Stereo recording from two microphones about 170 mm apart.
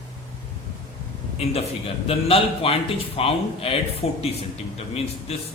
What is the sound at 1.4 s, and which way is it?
A man's voice, 35° left (ahead or behind).